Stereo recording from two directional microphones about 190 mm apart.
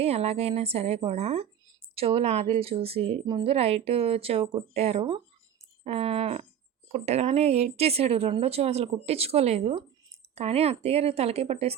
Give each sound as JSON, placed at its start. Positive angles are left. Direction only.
{"t": 0.0, "sound": "a woman's voice", "side_deg": -35}